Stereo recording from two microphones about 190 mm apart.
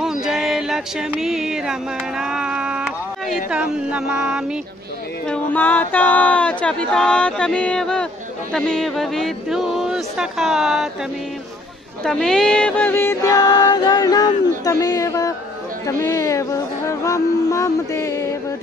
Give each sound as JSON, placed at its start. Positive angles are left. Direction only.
{"t": 0.0, "sound": "a sound", "side_deg": 0}
{"t": 3.4, "sound": "speech", "side_deg": -5}
{"t": 5.3, "sound": "speech", "side_deg": 10}
{"t": 12.0, "sound": "music", "side_deg": 5}
{"t": 14.6, "sound": "speech", "side_deg": 20}
{"t": 15.9, "sound": "music", "side_deg": 10}